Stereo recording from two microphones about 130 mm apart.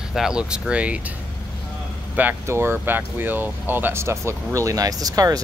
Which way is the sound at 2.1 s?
15° right (ahead or behind).